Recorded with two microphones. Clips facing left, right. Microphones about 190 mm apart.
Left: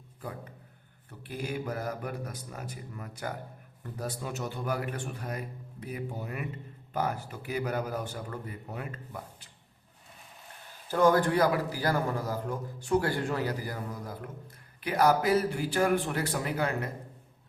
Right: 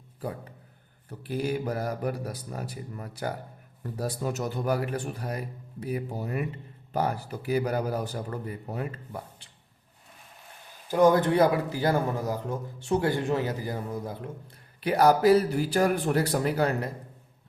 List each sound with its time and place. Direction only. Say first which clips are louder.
1.2 s speech: right 6 dB; 35° right (ahead or behind)
10.8 s speech: right 3 dB; 15° right (ahead or behind)
14.8 s speech: right 5 dB; 35° right (ahead or behind)